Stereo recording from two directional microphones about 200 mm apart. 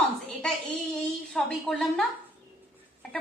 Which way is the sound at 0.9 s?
Centre (ahead or behind).